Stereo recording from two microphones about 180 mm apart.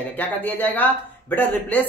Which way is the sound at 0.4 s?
10° left (ahead or behind).